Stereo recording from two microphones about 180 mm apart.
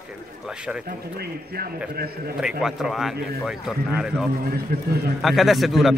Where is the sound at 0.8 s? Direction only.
60° right (ahead or behind).